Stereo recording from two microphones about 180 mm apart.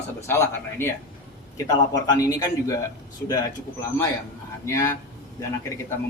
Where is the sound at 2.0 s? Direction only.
20° left (ahead or behind).